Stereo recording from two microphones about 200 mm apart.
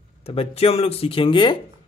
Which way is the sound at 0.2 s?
30° left (ahead or behind).